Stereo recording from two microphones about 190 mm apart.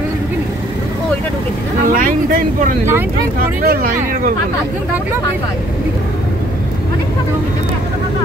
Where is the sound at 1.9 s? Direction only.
45° right (ahead or behind).